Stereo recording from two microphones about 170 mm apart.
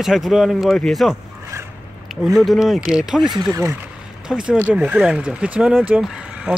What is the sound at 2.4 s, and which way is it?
Speech, centre (ahead or behind).